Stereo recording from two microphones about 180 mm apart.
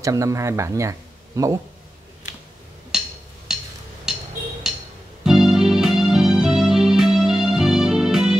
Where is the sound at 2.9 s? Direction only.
5° right (ahead or behind).